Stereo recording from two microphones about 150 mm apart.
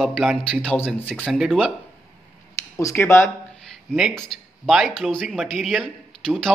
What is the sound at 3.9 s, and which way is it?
Speech, centre (ahead or behind).